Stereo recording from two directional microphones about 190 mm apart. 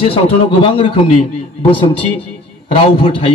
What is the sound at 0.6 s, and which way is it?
A man's voice, 25° left (ahead or behind).